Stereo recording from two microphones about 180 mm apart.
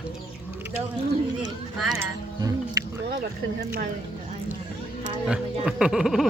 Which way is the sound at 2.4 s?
20° right (ahead or behind).